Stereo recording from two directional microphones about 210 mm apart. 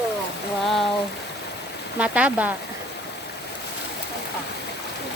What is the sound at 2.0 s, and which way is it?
Speech, 5° right (ahead or behind).